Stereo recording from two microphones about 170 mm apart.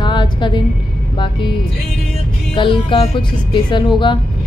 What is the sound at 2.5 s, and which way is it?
A woman's voice, 30° left (ahead or behind).